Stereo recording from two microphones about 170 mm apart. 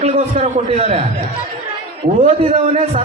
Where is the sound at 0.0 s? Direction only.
40° right (ahead or behind).